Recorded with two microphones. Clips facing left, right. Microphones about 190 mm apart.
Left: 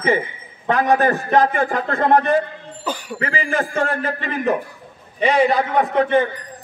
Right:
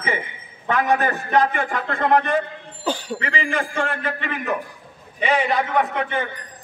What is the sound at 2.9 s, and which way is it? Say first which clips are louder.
Speech: right 2 dB; 25° right (ahead or behind).